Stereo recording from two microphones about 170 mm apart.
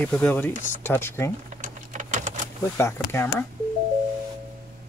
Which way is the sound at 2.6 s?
15° left (ahead or behind).